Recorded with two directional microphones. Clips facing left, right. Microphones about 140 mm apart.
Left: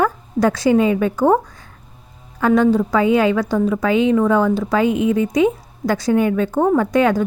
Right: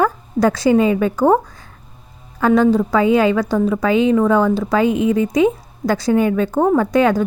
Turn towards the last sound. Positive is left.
turn(degrees=-35)  # may be behind; listen again after turning